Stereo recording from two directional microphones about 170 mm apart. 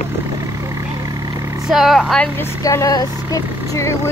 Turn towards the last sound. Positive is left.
turn(degrees=20)  # may be behind; listen again after turning